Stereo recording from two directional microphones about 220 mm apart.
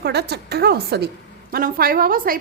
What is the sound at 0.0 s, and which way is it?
A woman's voice, 45° right (ahead or behind).